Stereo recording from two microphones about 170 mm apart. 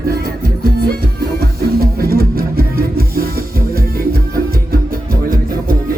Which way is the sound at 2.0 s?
60° right (ahead or behind).